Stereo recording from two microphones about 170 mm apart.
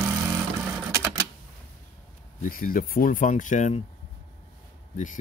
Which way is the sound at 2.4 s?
55° left (ahead or behind).